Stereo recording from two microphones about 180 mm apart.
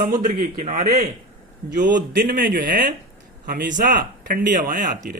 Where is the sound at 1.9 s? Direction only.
50° right (ahead or behind).